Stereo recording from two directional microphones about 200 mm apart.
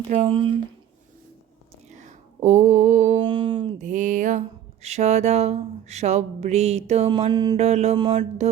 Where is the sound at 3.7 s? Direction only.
40° right (ahead or behind); by 7.6 s 20° right (ahead or behind).